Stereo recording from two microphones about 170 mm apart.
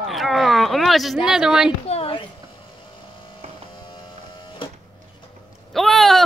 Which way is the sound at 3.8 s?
30° left (ahead or behind).